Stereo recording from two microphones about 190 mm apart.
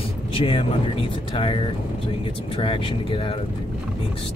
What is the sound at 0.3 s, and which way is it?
Speech, 25° left (ahead or behind).